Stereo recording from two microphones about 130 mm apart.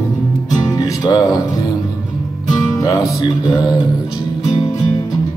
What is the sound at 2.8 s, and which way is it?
Music, 25° left (ahead or behind).